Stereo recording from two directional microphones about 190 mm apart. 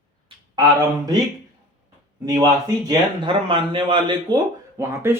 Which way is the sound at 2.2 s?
20° right (ahead or behind).